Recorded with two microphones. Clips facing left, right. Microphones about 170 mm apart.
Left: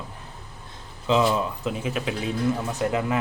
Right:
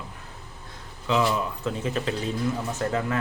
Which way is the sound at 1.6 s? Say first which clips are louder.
Even; 10° left (ahead or behind).